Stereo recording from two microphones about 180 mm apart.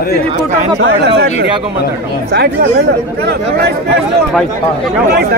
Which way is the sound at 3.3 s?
60° right (ahead or behind).